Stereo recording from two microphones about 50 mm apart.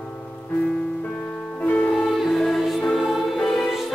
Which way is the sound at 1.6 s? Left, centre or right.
Left.